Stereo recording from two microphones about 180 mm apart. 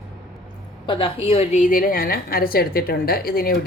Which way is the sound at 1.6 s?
50° left (ahead or behind).